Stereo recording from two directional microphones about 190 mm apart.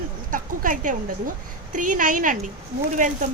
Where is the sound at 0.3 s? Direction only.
45° right (ahead or behind).